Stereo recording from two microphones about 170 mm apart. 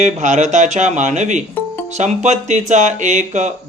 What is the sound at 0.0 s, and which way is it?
Speech, 45° right (ahead or behind).